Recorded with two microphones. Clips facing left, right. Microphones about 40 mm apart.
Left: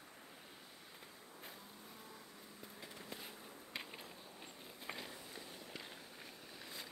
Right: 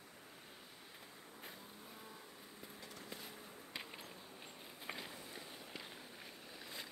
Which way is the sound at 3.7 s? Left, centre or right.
Centre.